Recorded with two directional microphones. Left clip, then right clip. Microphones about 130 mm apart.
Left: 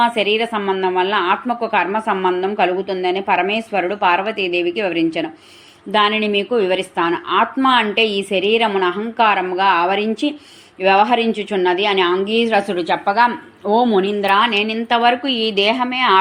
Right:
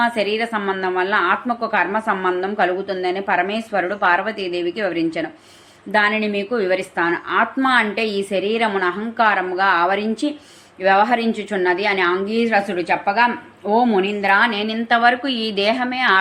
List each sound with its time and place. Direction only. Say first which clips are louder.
0.0 s a woman's voice: left 3 dB; 20° left (ahead or behind)